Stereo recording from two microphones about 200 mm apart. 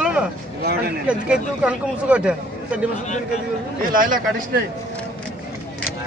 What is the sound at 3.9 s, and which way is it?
Speech, 45° right (ahead or behind).